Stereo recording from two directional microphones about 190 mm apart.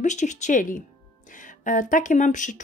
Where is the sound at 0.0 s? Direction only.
40° left (ahead or behind).